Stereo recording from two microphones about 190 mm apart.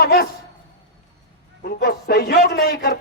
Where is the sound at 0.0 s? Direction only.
55° left (ahead or behind).